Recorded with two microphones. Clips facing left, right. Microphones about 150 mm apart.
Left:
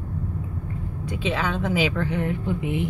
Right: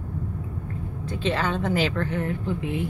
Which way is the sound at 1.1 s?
5° left (ahead or behind).